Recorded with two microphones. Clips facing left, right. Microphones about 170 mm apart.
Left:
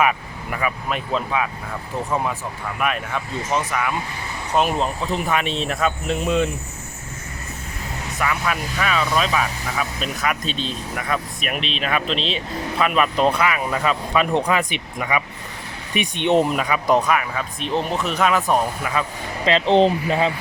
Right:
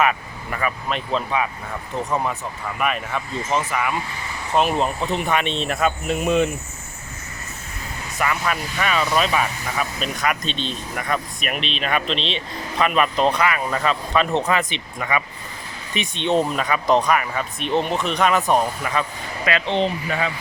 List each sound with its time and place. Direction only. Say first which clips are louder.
0.0 s speech: even; 10° left (ahead or behind); by 6.5 s 15° right (ahead or behind)
8.2 s speech: even; centre (ahead or behind)
19.5 s speech: left 6 dB; 30° left (ahead or behind)